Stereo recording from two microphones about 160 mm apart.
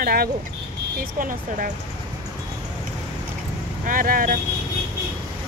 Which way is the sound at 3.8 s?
60° right (ahead or behind).